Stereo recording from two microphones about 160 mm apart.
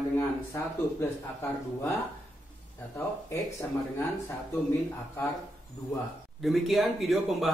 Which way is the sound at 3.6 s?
15° left (ahead or behind).